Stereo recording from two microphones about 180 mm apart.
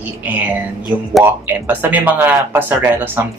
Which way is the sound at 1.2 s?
10° right (ahead or behind).